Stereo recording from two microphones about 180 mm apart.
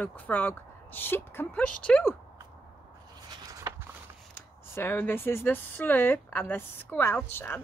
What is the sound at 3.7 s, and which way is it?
Walk, 20° right (ahead or behind).